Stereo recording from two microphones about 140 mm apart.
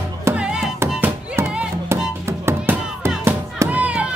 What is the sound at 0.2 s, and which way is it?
Music, 10° right (ahead or behind).